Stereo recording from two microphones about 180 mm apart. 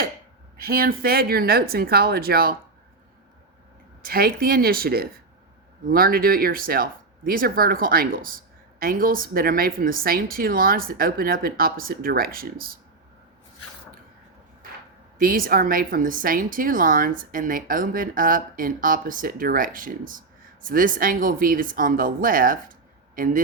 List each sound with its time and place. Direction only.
0.6 s speech: 55° right (ahead or behind)
4.0 s a woman's voice: 55° right (ahead or behind)
15.2 s a woman's voice: 50° right (ahead or behind)